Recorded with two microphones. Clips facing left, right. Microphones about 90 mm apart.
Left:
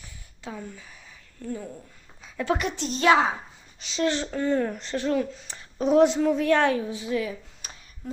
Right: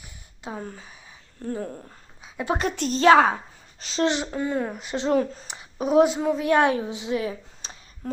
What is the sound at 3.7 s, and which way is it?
Speech, 40° right (ahead or behind).